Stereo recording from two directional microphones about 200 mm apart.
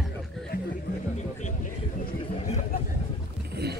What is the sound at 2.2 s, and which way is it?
Vehicle, 30° left (ahead or behind).